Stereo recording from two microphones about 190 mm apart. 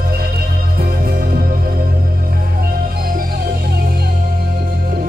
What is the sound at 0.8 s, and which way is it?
Music, 55° right (ahead or behind).